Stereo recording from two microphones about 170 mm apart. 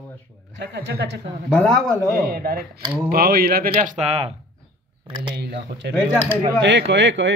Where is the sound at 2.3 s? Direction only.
60° right (ahead or behind).